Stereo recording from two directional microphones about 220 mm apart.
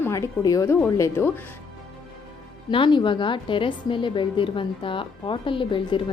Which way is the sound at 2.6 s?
20° left (ahead or behind).